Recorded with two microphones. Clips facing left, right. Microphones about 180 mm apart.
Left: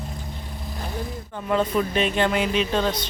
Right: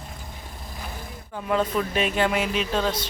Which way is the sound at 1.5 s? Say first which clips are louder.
Left 2 dB; centre (ahead or behind).